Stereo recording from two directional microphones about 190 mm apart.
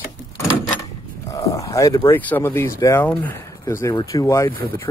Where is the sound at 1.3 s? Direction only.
15° left (ahead or behind).